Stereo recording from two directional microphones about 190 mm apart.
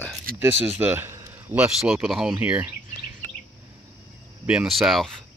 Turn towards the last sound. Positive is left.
turn(degrees=0)  # may be behind; listen again after turning